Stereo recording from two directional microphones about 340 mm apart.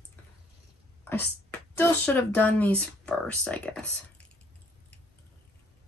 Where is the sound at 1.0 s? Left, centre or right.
Centre.